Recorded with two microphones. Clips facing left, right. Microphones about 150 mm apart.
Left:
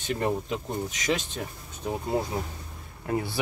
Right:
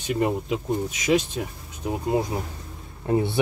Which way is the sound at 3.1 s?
25° right (ahead or behind).